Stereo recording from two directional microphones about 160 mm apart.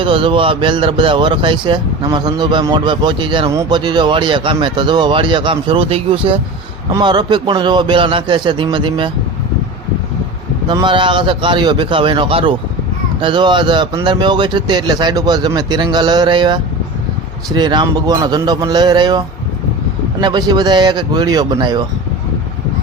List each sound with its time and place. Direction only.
0.0 s speech: 30° right (ahead or behind)
10.7 s speech: 30° right (ahead or behind)
20.2 s speech: 25° right (ahead or behind)